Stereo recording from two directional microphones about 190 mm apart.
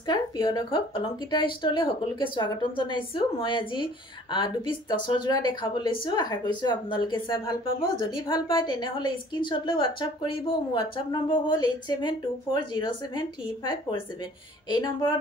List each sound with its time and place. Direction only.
0.0 s a woman's voice: 25° left (ahead or behind)
14.7 s a woman's voice: 25° left (ahead or behind)